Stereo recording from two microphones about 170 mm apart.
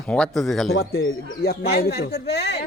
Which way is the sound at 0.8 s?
65° left (ahead or behind).